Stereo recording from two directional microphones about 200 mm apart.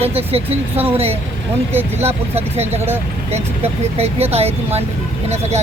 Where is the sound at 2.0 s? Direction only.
30° right (ahead or behind).